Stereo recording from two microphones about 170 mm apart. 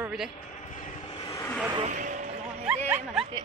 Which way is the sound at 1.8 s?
50° right (ahead or behind).